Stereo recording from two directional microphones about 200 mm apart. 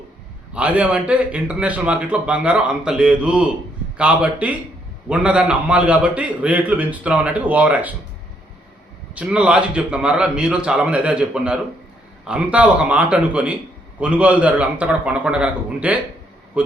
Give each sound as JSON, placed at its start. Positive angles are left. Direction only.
{"t": 0.5, "sound": "a man's voice", "side_deg": -5}
{"t": 9.1, "sound": "a man's voice", "side_deg": -5}